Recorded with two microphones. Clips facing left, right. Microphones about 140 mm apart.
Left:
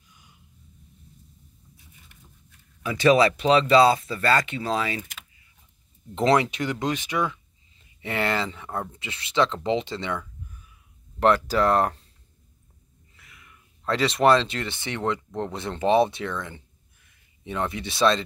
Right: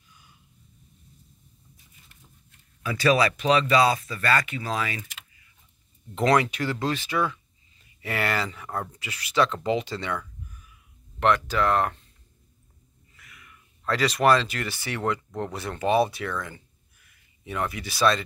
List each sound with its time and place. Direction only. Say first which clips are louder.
0.1 s a sound: even; 20° left (ahead or behind)
2.8 s speech: left 3 dB; 20° left (ahead or behind)
6.1 s speech: left 1 dB; 25° left (ahead or behind)
11.1 s speech: left 2 dB; 35° left (ahead or behind)
13.1 s speech: right 1 dB; 25° left (ahead or behind)